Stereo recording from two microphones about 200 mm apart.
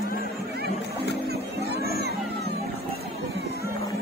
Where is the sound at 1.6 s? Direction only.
55° right (ahead or behind).